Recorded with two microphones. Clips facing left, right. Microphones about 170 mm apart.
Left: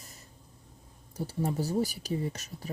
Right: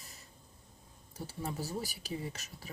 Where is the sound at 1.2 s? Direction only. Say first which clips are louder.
Left 8 dB; 40° left (ahead or behind).